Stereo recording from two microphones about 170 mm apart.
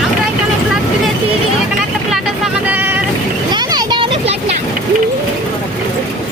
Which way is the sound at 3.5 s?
25° right (ahead or behind).